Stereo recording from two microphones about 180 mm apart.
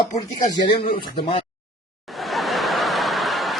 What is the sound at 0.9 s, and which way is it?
Speech, 30° left (ahead or behind).